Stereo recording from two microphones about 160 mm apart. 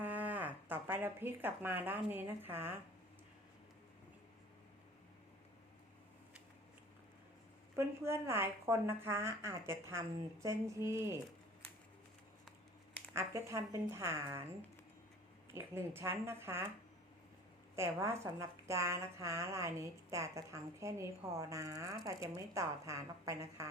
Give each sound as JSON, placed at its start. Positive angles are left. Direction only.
{"t": 0.0, "sound": "speech", "side_deg": -10}
{"t": 7.8, "sound": "a woman's voice", "side_deg": -15}
{"t": 13.1, "sound": "a woman's voice", "side_deg": -20}
{"t": 15.5, "sound": "a woman's voice", "side_deg": -15}
{"t": 17.7, "sound": "a woman's voice", "side_deg": -15}